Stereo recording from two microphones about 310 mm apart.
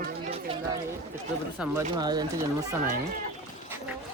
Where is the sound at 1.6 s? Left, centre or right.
Centre.